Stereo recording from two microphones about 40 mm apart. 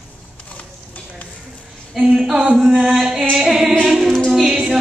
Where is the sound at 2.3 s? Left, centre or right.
Centre.